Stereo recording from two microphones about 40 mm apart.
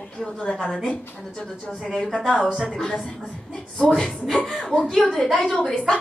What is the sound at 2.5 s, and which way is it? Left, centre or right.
Speech, centre.